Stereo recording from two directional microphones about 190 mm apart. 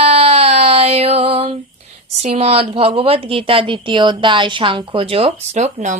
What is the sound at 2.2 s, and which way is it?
A woman's voice, 35° right (ahead or behind).